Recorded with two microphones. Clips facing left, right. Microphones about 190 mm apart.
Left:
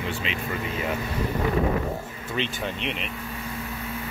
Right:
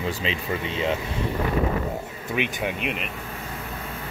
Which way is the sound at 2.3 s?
15° right (ahead or behind).